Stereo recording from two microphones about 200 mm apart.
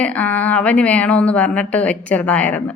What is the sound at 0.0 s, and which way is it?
A woman's voice, 5° left (ahead or behind).